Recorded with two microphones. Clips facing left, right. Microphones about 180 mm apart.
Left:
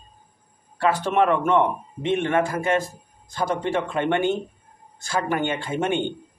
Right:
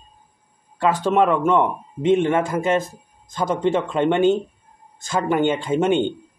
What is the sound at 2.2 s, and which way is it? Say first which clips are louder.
Speech: right 3 dB; 20° right (ahead or behind).